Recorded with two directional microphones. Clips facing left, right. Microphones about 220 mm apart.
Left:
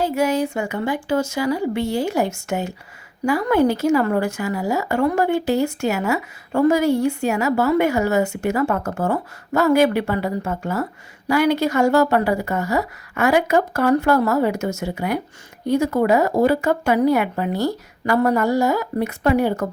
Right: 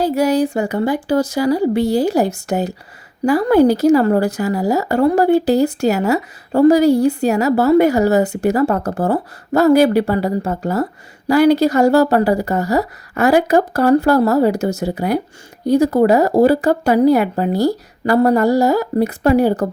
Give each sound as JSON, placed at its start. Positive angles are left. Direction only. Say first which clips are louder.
{"t": 0.0, "sound": "a woman's voice", "louder": "right 5 dB", "side_deg": -35}